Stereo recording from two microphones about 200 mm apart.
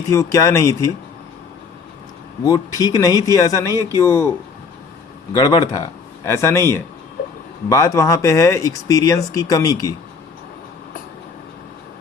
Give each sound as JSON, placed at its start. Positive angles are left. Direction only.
{"t": 0.1, "sound": "speech", "side_deg": 15}
{"t": 2.4, "sound": "speech", "side_deg": 20}
{"t": 5.3, "sound": "speech", "side_deg": 20}